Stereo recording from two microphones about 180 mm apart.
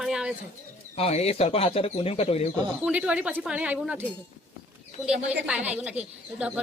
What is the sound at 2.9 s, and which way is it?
Speech, 5° right (ahead or behind).